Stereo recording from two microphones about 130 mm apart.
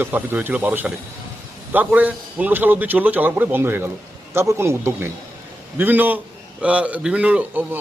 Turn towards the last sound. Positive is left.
turn(degrees=-15)  # may be behind; listen again after turning